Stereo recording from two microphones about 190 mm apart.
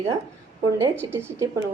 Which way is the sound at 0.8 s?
15° right (ahead or behind).